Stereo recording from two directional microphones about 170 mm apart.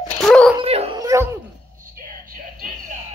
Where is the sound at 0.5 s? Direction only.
35° right (ahead or behind).